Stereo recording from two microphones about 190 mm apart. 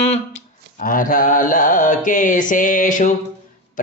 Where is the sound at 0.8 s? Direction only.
45° left (ahead or behind).